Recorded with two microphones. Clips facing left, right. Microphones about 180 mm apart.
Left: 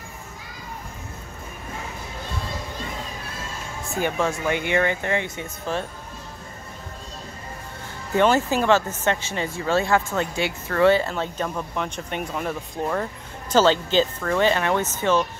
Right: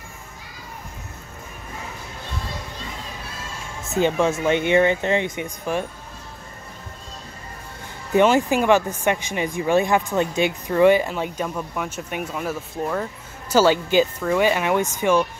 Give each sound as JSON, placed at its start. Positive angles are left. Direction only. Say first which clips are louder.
{"t": 3.9, "sound": "speech", "louder": "right 5 dB", "side_deg": -20}
{"t": 8.1, "sound": "speech", "louder": "right 3 dB", "side_deg": -15}